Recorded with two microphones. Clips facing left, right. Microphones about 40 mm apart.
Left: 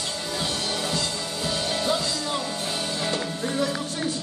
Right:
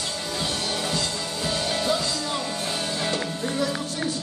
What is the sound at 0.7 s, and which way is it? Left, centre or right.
Music, centre.